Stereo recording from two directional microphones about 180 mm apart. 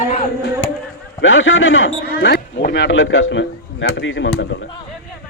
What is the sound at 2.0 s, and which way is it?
A man's voice, 60° left (ahead or behind).